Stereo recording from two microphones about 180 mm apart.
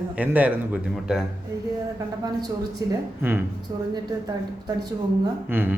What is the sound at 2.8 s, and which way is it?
Speech, 20° right (ahead or behind).